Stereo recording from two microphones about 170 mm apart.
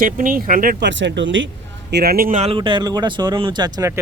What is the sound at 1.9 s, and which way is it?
Speech, 70° right (ahead or behind).